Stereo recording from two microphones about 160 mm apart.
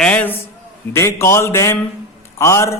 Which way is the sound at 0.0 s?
10° left (ahead or behind).